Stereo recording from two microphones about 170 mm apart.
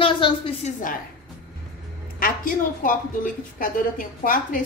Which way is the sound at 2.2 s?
55° left (ahead or behind).